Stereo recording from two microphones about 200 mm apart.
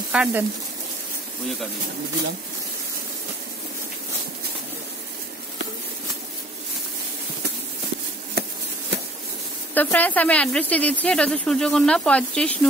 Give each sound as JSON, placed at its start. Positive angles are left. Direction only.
{"t": 0.1, "sound": "speech", "side_deg": -5}
{"t": 8.4, "sound": "a sound", "side_deg": -55}
{"t": 9.8, "sound": "speech", "side_deg": 10}